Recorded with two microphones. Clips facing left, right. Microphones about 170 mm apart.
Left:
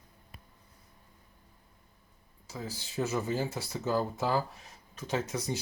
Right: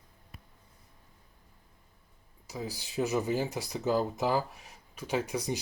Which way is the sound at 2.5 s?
15° right (ahead or behind).